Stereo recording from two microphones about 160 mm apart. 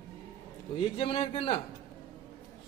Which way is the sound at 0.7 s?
35° left (ahead or behind).